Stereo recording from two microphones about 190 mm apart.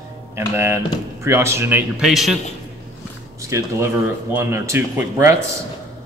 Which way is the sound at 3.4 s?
15° right (ahead or behind).